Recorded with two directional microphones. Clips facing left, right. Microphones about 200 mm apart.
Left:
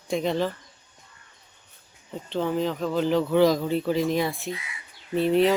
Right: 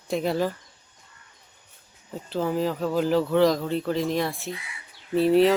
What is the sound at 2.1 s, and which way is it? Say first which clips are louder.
Speech: even; 5° right (ahead or behind).